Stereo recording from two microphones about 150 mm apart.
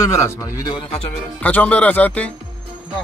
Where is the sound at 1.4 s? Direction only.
10° left (ahead or behind).